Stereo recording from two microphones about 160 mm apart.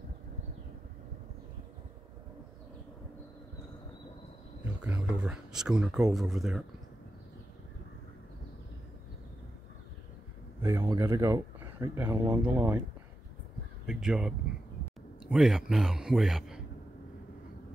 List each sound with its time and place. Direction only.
4.8 s a man's voice: 10° right (ahead or behind)
10.6 s speech: 15° right (ahead or behind)
13.8 s a man's voice: 5° right (ahead or behind)